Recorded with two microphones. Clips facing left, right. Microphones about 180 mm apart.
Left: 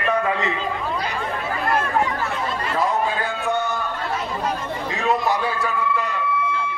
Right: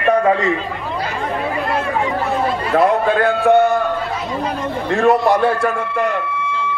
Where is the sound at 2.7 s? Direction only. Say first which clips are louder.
Right 8 dB; 65° right (ahead or behind).